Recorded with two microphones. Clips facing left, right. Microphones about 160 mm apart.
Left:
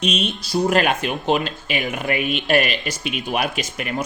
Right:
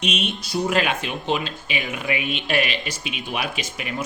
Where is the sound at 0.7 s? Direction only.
50° left (ahead or behind).